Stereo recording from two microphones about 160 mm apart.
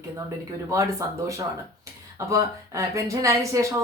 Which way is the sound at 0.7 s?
20° right (ahead or behind).